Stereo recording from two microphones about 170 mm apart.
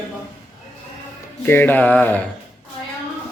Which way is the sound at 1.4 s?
10° left (ahead or behind).